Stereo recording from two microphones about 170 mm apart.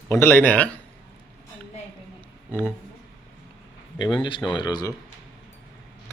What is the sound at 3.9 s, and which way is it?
Speech, 25° left (ahead or behind).